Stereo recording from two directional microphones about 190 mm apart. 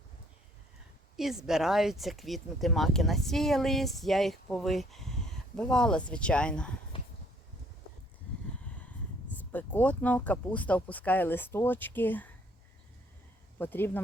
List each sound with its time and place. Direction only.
1.1 s speech: centre (ahead or behind)
6.9 s a sound: 25° left (ahead or behind)
9.5 s speech: 10° left (ahead or behind)
13.6 s speech: 10° left (ahead or behind)